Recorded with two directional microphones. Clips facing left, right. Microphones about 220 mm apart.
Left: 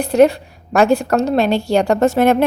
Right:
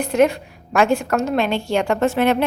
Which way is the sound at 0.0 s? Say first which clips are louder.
Left 4 dB; 35° left (ahead or behind).